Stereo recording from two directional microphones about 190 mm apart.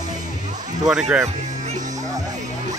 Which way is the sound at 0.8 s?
5° right (ahead or behind).